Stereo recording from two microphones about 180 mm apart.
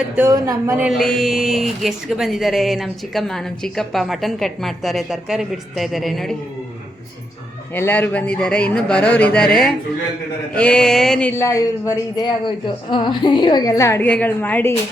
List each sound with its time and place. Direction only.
0.2 s speech: 15° right (ahead or behind)
0.9 s speech: centre (ahead or behind)
7.7 s speech: 10° left (ahead or behind)